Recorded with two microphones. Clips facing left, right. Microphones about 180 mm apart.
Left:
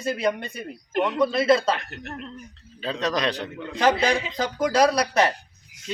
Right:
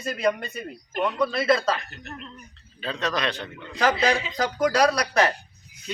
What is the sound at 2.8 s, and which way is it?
Speech, 35° left (ahead or behind).